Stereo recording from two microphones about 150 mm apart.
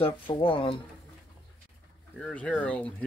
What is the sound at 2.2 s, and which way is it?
Speech, 5° left (ahead or behind).